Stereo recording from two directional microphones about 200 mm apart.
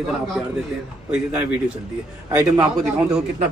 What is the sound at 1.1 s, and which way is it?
A man's voice, 5° right (ahead or behind).